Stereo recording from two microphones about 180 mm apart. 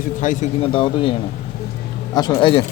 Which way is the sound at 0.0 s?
45° left (ahead or behind).